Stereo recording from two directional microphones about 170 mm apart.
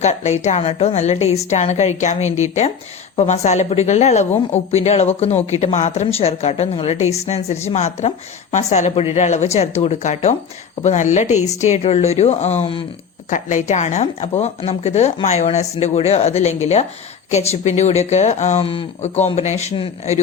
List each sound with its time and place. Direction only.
0.0 s speech: 40° left (ahead or behind)
13.3 s speech: 45° left (ahead or behind)